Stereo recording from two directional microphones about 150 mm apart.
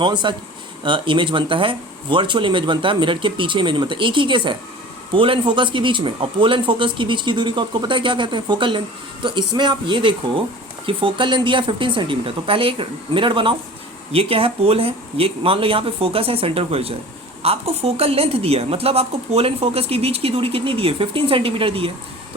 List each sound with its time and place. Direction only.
0.0 s a woman's voice: 30° right (ahead or behind)